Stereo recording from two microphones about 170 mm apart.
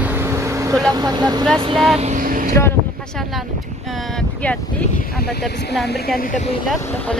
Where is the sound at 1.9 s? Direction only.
40° right (ahead or behind).